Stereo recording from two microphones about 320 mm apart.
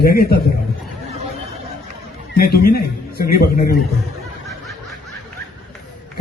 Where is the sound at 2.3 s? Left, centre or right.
Left.